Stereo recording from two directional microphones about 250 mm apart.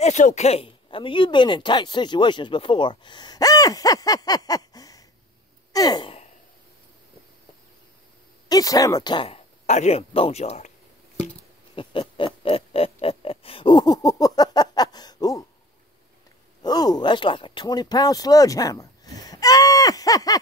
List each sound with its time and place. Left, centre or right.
0.0 s speech: left
5.7 s a sound: centre
8.5 s speech: centre
11.7 s pig: left
16.6 s speech: centre